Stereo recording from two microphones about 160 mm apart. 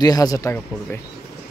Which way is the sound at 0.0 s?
25° left (ahead or behind).